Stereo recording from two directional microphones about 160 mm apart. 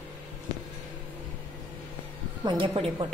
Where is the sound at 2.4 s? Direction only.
30° right (ahead or behind).